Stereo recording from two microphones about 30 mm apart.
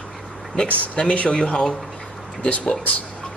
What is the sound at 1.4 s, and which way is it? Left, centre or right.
Speech, left.